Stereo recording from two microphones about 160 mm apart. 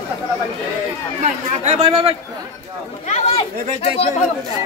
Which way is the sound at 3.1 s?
40° left (ahead or behind).